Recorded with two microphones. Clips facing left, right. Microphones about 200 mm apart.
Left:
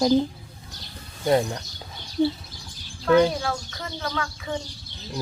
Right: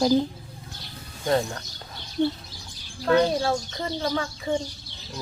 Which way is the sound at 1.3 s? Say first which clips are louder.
Left 3 dB; 15° left (ahead or behind).